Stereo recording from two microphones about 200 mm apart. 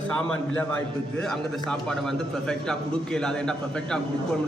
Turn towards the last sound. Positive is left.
turn(degrees=5)  # may be behind; listen again after turning